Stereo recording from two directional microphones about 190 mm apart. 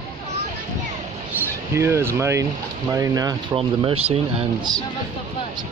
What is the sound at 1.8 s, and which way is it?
Speech, 15° right (ahead or behind).